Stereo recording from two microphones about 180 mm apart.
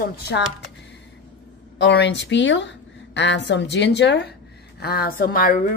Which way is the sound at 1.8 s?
75° left (ahead or behind).